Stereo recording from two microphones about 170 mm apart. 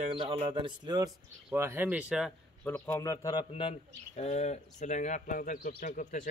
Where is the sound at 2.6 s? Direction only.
15° left (ahead or behind).